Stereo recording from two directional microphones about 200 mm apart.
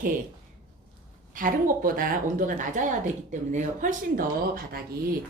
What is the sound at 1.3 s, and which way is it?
Speech, 40° right (ahead or behind).